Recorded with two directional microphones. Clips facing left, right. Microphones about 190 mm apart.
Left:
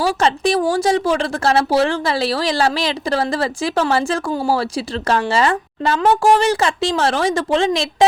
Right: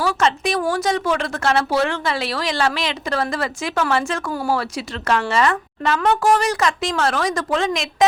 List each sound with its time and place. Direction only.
0.0 s a woman's voice: 30° left (ahead or behind)